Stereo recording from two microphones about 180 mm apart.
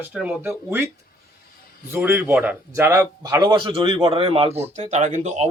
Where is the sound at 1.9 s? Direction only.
10° right (ahead or behind); by 5.5 s 40° right (ahead or behind).